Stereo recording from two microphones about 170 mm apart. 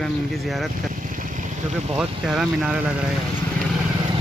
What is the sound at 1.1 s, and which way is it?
Vehicle, 50° right (ahead or behind).